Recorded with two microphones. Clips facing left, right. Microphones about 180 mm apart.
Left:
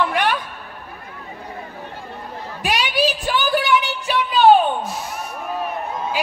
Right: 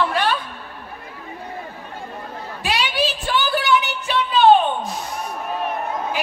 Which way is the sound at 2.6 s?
15° left (ahead or behind).